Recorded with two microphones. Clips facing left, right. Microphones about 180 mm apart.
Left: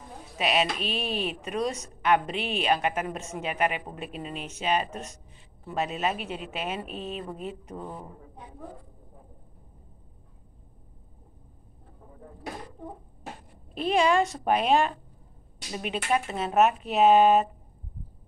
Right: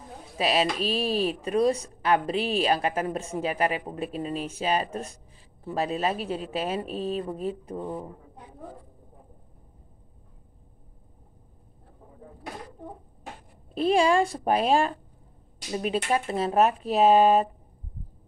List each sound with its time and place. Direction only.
0.4 s speech: 35° right (ahead or behind)
13.7 s speech: 30° right (ahead or behind)